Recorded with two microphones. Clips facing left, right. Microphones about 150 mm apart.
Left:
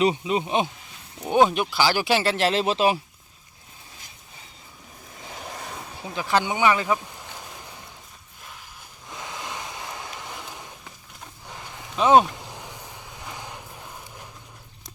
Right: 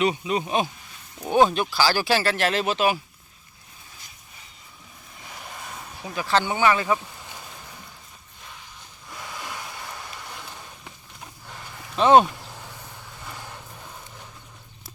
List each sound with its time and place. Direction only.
0.0 s speech: 25° left (ahead or behind)
6.0 s speech: 20° left (ahead or behind)
6.8 s speech: 5° left (ahead or behind)
7.3 s a sound: 15° left (ahead or behind)
9.0 s a sound: 20° left (ahead or behind)
11.9 s speech: 5° left (ahead or behind)
12.3 s vehicle: 15° left (ahead or behind)